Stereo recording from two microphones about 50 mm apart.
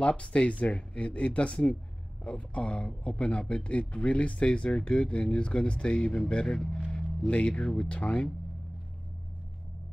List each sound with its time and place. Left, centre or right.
0.0 s speech: left